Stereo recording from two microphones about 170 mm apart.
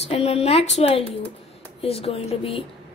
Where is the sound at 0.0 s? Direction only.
40° left (ahead or behind).